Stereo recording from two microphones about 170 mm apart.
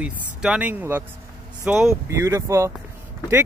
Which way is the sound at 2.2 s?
15° right (ahead or behind).